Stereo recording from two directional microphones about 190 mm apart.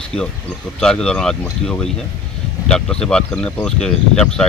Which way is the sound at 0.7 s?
5° left (ahead or behind).